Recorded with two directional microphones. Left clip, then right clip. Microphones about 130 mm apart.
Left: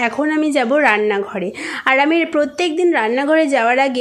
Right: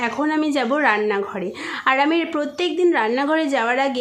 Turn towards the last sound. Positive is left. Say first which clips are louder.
# left 5 dB
turn(degrees=25)  # may be behind; listen again after turning